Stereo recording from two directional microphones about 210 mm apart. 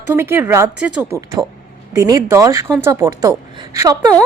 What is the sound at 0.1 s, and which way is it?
A woman's voice, 10° right (ahead or behind).